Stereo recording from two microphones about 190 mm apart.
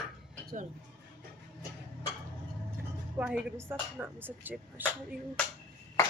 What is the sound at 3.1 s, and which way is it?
Speech, 5° right (ahead or behind).